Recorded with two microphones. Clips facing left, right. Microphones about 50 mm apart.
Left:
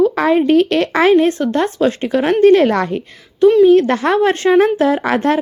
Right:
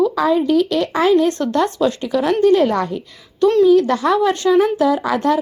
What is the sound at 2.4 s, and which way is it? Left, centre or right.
Speech, left.